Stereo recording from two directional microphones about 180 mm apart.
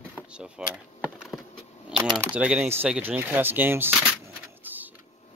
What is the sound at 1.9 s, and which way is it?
Speech, 5° right (ahead or behind).